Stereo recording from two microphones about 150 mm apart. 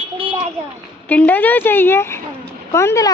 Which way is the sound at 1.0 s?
10° left (ahead or behind).